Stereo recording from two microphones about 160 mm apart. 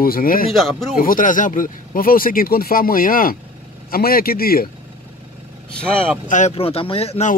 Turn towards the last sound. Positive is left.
turn(degrees=40)  # may be behind; listen again after turning